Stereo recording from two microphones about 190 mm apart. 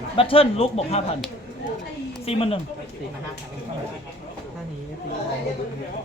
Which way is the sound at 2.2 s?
30° left (ahead or behind).